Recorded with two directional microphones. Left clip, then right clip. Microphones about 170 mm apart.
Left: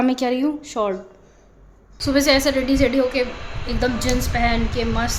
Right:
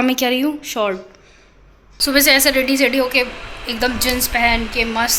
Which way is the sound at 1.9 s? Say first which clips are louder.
Right 4 dB; 10° left (ahead or behind).